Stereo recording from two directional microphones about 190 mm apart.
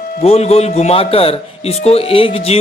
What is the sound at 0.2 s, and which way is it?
Speech, 30° left (ahead or behind).